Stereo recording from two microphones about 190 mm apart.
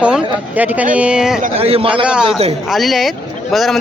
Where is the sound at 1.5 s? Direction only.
30° right (ahead or behind).